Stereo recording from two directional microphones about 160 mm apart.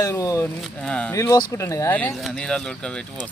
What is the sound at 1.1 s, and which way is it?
Speech, 20° left (ahead or behind).